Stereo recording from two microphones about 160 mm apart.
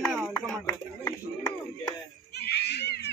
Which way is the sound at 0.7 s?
20° left (ahead or behind).